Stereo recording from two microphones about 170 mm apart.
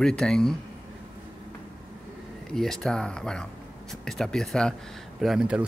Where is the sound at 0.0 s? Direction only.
5° left (ahead or behind).